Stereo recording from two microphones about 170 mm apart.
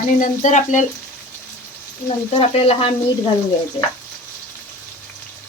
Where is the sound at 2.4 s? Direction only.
35° left (ahead or behind).